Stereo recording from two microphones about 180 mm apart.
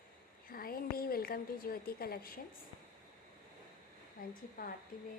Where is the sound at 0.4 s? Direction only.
55° left (ahead or behind).